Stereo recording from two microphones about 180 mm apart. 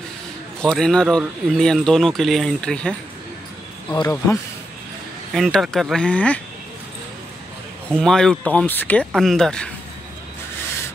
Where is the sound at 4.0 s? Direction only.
15° left (ahead or behind).